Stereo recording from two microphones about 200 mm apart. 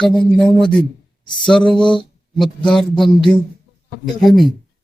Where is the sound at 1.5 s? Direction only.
5° left (ahead or behind).